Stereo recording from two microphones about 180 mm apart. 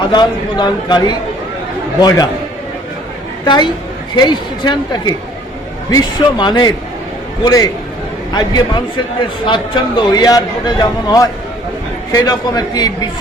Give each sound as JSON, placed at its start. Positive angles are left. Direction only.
{"t": 0.0, "sound": "a man's voice", "side_deg": 25}
{"t": 3.4, "sound": "a woman's voice", "side_deg": 25}